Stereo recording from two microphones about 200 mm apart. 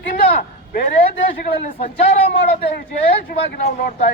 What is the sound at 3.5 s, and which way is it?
Speech, 50° left (ahead or behind).